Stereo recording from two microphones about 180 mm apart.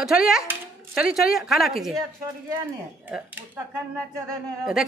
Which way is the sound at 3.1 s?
10° right (ahead or behind).